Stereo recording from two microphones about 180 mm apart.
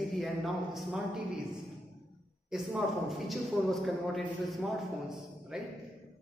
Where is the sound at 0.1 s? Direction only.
Centre (ahead or behind).